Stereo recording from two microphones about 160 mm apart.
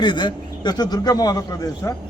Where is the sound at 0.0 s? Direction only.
30° left (ahead or behind).